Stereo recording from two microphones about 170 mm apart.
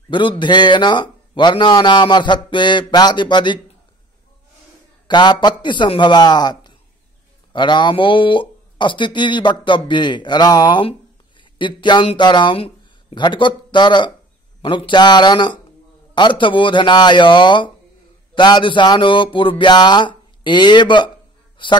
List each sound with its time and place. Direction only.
0.1 s a man's voice: 30° left (ahead or behind)
5.0 s a man's voice: 25° left (ahead or behind)